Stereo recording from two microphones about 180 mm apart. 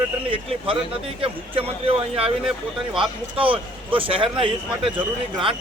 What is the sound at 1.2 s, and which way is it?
Speech, 30° right (ahead or behind).